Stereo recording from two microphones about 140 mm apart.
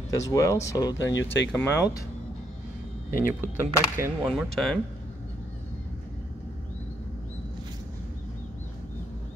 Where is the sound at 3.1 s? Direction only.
80° left.